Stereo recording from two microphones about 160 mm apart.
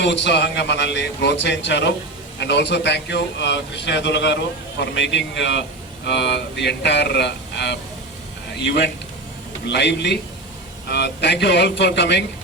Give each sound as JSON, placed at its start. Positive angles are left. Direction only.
{"t": 0.0, "sound": "a man's voice", "side_deg": 90}